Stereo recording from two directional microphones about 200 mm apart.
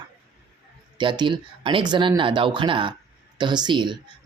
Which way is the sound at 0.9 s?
25° right (ahead or behind).